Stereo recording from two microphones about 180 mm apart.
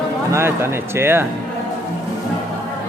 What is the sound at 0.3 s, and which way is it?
Speech, 15° right (ahead or behind).